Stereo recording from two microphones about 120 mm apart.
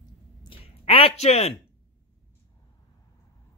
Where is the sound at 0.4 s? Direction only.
50° left (ahead or behind); by 1.5 s 65° left (ahead or behind).